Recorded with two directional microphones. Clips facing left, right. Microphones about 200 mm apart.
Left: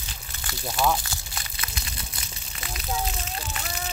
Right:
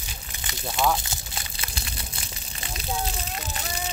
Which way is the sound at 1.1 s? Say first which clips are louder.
Right 1 dB; 30° right (ahead or behind).